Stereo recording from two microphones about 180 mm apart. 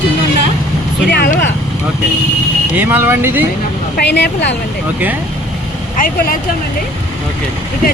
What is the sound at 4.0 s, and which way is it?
Speech, 65° left (ahead or behind).